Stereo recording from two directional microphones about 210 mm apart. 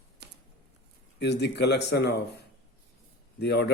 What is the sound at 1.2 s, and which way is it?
Speech, 55° left (ahead or behind).